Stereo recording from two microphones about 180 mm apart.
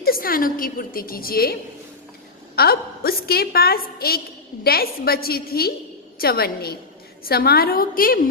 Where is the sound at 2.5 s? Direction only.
60° left (ahead or behind).